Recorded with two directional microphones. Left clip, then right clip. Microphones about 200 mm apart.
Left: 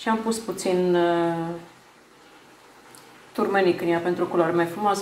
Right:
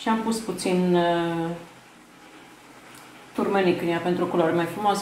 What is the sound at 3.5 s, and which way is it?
Speech, 25° left (ahead or behind).